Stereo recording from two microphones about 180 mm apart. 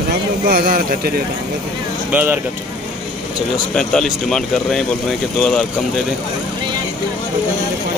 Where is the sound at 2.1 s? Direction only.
10° right (ahead or behind).